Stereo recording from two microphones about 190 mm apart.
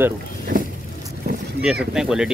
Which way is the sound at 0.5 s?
45° right (ahead or behind).